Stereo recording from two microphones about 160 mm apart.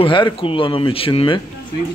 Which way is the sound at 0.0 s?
35° left (ahead or behind).